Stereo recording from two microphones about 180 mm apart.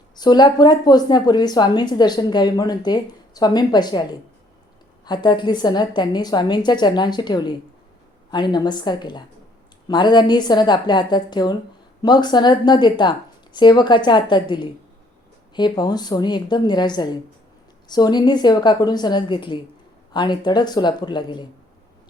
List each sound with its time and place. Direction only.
0.2 s a woman's voice: 25° left (ahead or behind)
5.0 s a woman's voice: 25° left (ahead or behind)